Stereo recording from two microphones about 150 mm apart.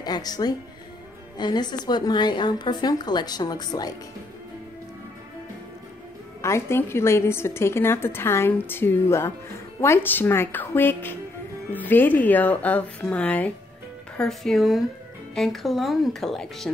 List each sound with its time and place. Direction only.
0.0 s a woman's voice: 25° left (ahead or behind)
6.4 s speech: 15° left (ahead or behind); by 16.7 s centre (ahead or behind)